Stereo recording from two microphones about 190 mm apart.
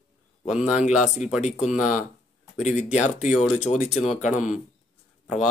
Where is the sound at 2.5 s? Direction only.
40° left (ahead or behind).